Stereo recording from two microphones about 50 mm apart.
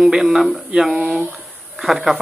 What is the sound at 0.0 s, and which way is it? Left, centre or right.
Speech, centre.